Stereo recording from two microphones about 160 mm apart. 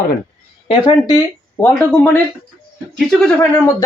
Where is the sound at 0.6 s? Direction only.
30° left (ahead or behind).